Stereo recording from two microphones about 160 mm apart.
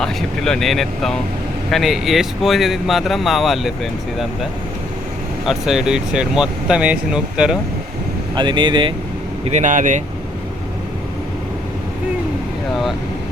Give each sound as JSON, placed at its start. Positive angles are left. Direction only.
{"t": 0.0, "sound": "speech", "side_deg": 5}
{"t": 5.5, "sound": "speech", "side_deg": 0}
{"t": 8.4, "sound": "speech", "side_deg": -30}
{"t": 9.5, "sound": "speech", "side_deg": -50}